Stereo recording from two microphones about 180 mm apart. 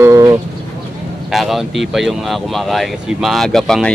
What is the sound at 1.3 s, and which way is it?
Speech, centre (ahead or behind).